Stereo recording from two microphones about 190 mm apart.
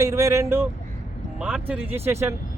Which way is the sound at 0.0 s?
15° right (ahead or behind).